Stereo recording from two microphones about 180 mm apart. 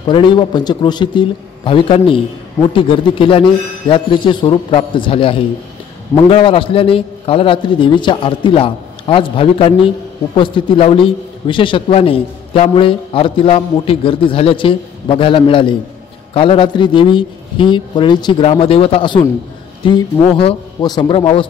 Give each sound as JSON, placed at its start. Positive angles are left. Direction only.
{"t": 0.0, "sound": "a man's voice", "side_deg": 25}